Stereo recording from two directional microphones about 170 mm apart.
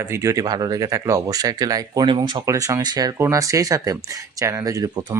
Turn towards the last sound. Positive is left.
turn(degrees=-20)  # may be behind; listen again after turning